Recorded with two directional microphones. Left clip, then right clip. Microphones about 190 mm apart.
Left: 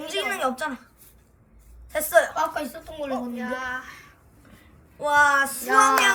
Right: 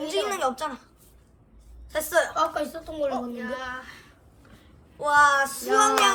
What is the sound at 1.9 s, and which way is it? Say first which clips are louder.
Speech: left 4 dB; 5° right (ahead or behind).